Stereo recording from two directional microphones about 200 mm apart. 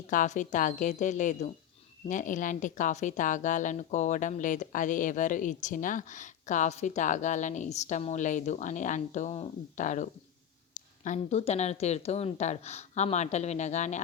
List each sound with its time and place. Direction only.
0.1 s speech: 40° left (ahead or behind)